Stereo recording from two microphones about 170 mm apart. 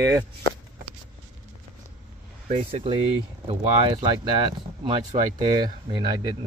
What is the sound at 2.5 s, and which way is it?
Speech, 35° right (ahead or behind).